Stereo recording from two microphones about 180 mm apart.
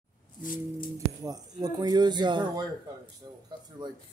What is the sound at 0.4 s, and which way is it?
Music, 50° left (ahead or behind).